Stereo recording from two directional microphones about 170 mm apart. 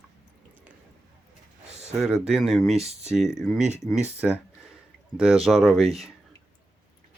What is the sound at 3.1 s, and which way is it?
Speech, centre (ahead or behind).